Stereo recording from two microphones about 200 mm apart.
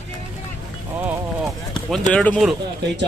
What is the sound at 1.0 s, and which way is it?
Clip-clop, 10° right (ahead or behind).